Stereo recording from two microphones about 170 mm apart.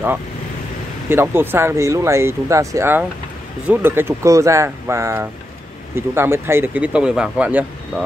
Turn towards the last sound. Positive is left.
turn(degrees=-10)  # may be behind; listen again after turning